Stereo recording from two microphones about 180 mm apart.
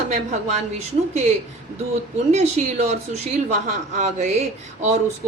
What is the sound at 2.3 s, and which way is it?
Speech, 40° right (ahead or behind).